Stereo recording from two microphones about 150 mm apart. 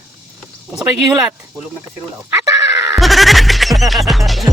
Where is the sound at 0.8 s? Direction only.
20° right (ahead or behind).